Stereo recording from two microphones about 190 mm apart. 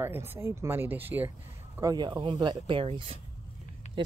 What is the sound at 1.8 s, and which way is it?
Speech, 20° right (ahead or behind).